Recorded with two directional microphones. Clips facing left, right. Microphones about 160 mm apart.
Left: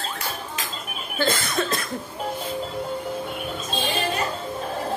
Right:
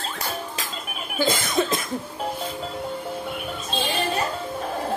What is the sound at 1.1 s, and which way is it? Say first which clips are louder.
Speech: right 1 dB; 15° right (ahead or behind).